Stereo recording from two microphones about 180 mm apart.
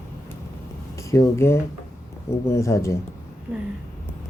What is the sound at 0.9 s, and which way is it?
Speech, 15° left (ahead or behind).